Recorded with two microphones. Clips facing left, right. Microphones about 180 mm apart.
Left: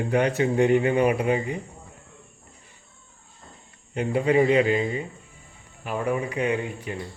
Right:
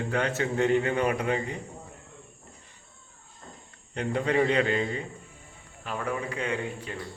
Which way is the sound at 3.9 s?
10° left (ahead or behind).